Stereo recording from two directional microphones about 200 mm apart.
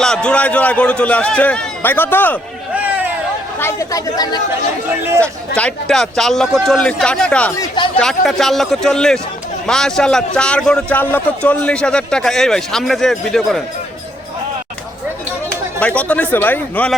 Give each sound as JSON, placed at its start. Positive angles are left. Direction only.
{"t": 0.0, "sound": "a man's voice", "side_deg": 5}
{"t": 2.7, "sound": "a sound", "side_deg": -5}
{"t": 3.6, "sound": "a man's voice", "side_deg": 15}
{"t": 5.5, "sound": "a man's voice", "side_deg": 5}
{"t": 15.4, "sound": "speech", "side_deg": 5}